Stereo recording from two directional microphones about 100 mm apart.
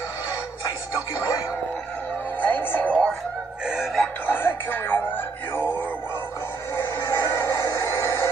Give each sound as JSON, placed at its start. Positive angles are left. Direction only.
{"t": 2.4, "sound": "music", "side_deg": 20}
{"t": 3.6, "sound": "synthetic singing", "side_deg": -5}
{"t": 4.3, "sound": "music", "side_deg": 20}
{"t": 6.8, "sound": "music", "side_deg": 25}